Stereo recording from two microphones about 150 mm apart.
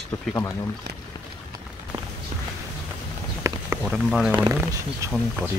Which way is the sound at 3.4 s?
20° right (ahead or behind).